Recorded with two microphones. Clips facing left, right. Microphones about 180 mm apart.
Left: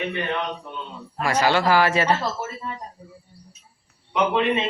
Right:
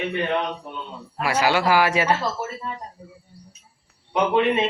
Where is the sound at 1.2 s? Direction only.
10° right (ahead or behind).